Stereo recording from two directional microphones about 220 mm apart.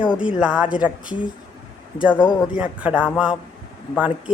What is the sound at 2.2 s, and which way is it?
Speech, 20° left (ahead or behind).